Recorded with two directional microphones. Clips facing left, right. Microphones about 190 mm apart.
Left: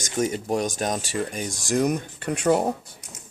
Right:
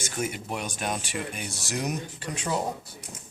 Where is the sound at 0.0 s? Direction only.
40° left (ahead or behind); by 2.6 s 65° left (ahead or behind).